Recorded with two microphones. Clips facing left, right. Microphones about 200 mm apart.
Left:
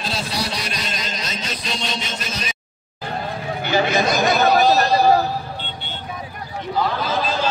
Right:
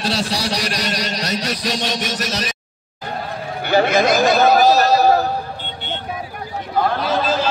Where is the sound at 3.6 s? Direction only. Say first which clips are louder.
Right 4 dB; 55° right (ahead or behind).